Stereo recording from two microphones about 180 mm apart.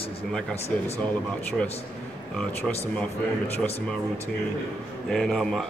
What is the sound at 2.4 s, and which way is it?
Speech, 5° left (ahead or behind).